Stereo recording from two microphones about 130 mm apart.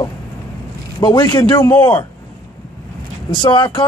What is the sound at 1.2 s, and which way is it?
Speech, 40° left (ahead or behind).